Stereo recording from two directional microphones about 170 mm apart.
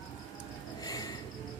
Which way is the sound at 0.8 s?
20° left (ahead or behind).